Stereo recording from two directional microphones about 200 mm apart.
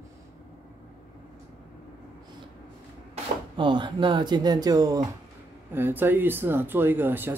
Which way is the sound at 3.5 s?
25° right (ahead or behind).